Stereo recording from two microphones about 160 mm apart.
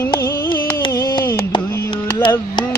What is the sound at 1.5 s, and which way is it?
Music, 30° left (ahead or behind).